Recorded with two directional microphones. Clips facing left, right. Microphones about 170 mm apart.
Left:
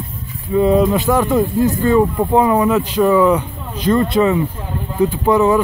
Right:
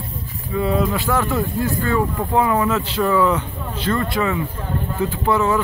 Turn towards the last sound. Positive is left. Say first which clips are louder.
# left 5 dB
turn(degrees=15)  # may be behind; listen again after turning